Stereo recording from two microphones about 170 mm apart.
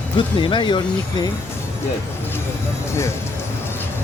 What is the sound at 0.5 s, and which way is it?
Speech, 30° left (ahead or behind).